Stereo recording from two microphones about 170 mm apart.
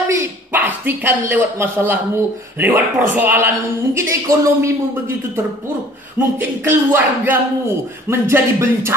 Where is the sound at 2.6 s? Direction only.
10° right (ahead or behind).